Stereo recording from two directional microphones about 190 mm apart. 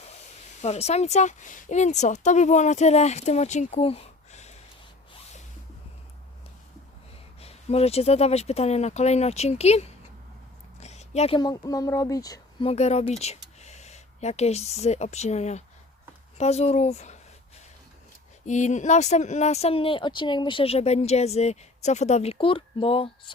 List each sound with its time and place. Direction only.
0.6 s speech: 35° left (ahead or behind)
7.4 s speech: 30° left (ahead or behind)
10.8 s a sound: 35° left (ahead or behind)
11.3 s speech: 20° left (ahead or behind)
18.4 s speech: 40° left (ahead or behind)